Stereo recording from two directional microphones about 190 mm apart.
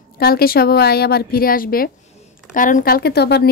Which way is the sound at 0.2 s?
50° left (ahead or behind).